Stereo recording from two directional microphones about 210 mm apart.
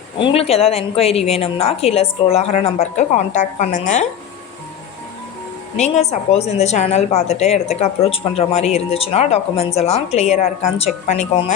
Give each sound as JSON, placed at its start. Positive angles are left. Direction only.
{"t": 0.2, "sound": "a woman's voice", "side_deg": 30}
{"t": 5.7, "sound": "speech", "side_deg": 30}